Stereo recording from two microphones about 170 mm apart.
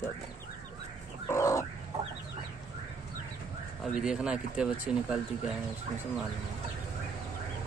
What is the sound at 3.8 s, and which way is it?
Speech, 5° right (ahead or behind).